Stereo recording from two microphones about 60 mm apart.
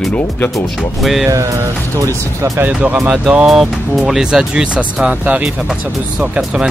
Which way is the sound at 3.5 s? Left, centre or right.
Centre.